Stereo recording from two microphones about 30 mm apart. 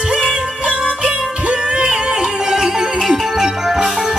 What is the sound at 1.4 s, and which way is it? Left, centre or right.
Music, right.